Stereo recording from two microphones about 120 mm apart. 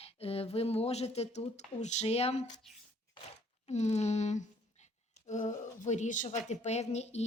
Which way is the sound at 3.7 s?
70° left (ahead or behind).